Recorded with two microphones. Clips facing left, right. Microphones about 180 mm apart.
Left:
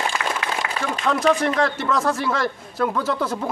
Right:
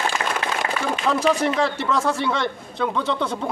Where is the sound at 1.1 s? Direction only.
Centre (ahead or behind).